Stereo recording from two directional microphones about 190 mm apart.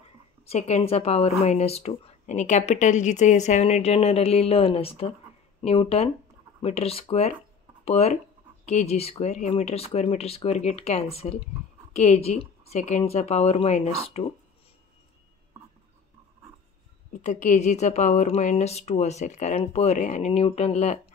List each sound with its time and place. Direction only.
0.5 s speech: 35° left (ahead or behind)
17.2 s speech: 40° left (ahead or behind)